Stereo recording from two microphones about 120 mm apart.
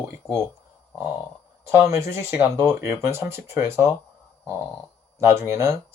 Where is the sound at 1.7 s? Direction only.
25° right (ahead or behind).